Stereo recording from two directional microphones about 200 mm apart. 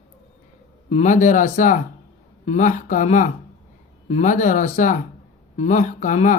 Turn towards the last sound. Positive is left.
turn(degrees=40)  # may be behind; listen again after turning